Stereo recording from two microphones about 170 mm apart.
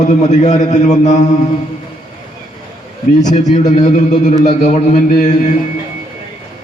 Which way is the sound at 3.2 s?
45° left (ahead or behind).